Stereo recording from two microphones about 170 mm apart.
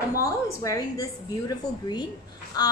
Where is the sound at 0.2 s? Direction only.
20° left (ahead or behind).